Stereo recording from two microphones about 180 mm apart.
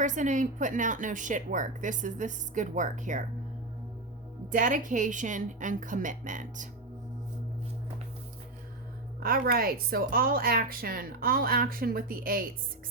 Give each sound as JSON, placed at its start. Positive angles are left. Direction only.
{"t": 0.0, "sound": "speech", "side_deg": -45}
{"t": 4.5, "sound": "speech", "side_deg": -45}
{"t": 9.2, "sound": "speech", "side_deg": -55}